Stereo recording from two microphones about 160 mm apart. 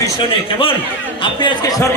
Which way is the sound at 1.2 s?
25° left (ahead or behind).